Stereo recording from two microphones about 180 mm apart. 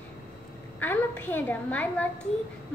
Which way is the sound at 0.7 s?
10° left (ahead or behind).